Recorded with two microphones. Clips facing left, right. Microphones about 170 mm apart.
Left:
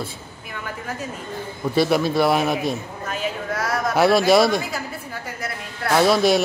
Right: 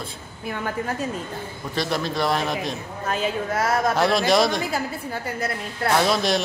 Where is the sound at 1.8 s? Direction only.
10° left (ahead or behind).